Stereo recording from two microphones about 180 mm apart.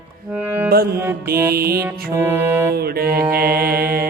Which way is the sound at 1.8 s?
15° right (ahead or behind).